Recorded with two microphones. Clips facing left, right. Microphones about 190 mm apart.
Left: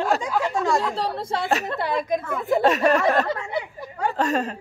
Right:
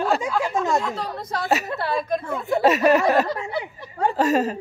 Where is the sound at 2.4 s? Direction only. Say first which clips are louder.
Right 1 dB; centre (ahead or behind).